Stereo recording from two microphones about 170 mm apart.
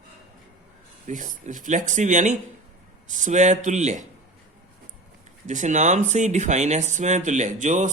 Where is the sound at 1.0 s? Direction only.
50° right (ahead or behind).